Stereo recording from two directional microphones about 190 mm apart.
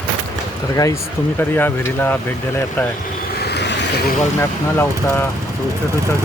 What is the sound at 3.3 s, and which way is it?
Vehicle, 55° left (ahead or behind).